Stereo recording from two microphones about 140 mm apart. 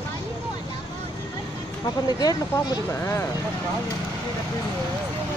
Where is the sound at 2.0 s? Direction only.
30° left (ahead or behind).